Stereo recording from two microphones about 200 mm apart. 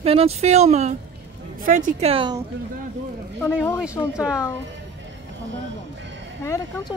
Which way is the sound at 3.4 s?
10° left (ahead or behind).